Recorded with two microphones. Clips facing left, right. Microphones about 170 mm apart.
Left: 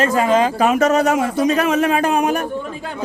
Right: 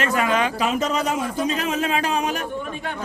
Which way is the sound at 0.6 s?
70° left (ahead or behind).